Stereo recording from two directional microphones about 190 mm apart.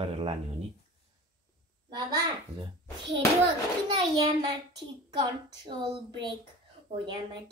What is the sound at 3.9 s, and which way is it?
Speech, 25° right (ahead or behind).